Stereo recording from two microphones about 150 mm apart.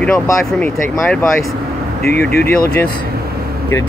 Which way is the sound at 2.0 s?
90° left.